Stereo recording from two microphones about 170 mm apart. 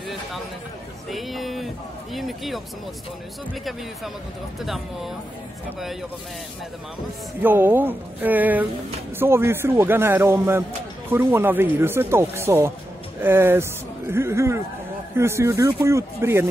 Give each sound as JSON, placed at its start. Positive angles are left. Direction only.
{"t": 1.1, "sound": "speech", "side_deg": 0}
{"t": 4.6, "sound": "speech", "side_deg": 0}
{"t": 7.4, "sound": "speech", "side_deg": -10}